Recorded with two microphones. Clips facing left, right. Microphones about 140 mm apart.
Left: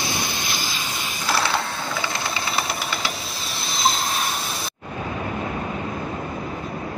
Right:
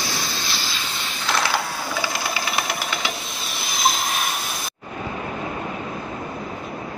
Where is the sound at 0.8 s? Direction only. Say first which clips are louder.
Left 1 dB; 10° left (ahead or behind).